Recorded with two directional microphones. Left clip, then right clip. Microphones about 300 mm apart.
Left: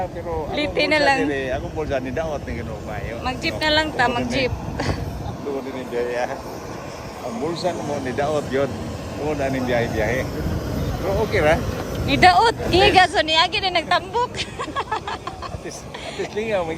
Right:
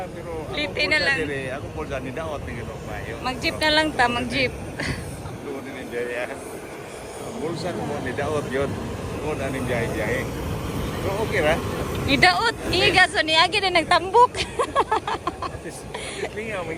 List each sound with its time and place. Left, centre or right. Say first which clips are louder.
0.5 s speech: left 2 dB; centre
1.3 s speech: left 5 dB; left
3.2 s speech: left 1 dB; centre
7.6 s speech: left 4 dB; left
11.3 s speech: left 3 dB; left
12.0 s speech: left 4 dB; centre
16.4 s speech: left 10 dB; left